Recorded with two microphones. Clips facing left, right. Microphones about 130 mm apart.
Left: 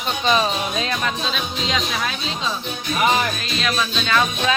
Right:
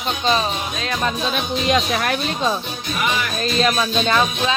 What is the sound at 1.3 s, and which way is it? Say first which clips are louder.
Speech: right 5 dB; 55° right (ahead or behind).